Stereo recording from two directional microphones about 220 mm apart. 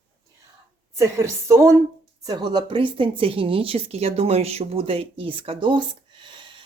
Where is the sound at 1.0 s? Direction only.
15° right (ahead or behind).